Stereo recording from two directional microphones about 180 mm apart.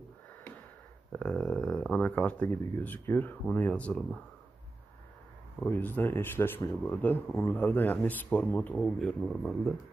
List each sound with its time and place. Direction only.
1.1 s speech: 5° left (ahead or behind)
5.6 s speech: 10° left (ahead or behind)